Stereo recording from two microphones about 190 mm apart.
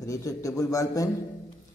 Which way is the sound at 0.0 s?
15° left (ahead or behind).